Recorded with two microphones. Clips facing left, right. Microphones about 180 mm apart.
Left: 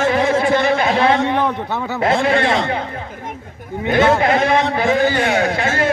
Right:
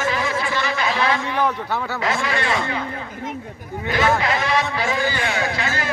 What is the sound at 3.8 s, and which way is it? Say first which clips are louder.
A man's voice: left 6 dB; 55° left (ahead or behind).